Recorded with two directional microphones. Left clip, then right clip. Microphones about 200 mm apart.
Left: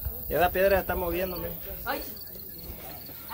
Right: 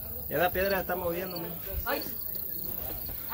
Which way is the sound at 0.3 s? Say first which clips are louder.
Left 5 dB; 35° left (ahead or behind).